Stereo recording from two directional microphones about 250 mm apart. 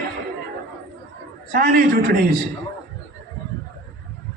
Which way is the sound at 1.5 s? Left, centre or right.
Right.